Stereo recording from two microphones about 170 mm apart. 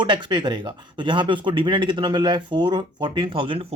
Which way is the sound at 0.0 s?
25° right (ahead or behind).